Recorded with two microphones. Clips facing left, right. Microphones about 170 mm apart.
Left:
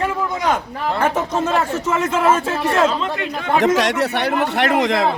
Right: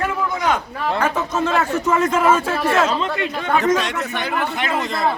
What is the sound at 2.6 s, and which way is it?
Speech, centre (ahead or behind).